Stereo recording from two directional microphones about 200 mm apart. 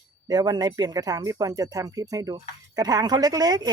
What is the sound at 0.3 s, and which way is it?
Speech, 20° right (ahead or behind).